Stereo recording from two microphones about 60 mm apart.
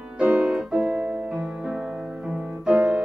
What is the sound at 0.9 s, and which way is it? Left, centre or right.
Music, right.